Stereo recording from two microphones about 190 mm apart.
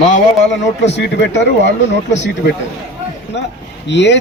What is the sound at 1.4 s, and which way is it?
Speech, 65° left (ahead or behind).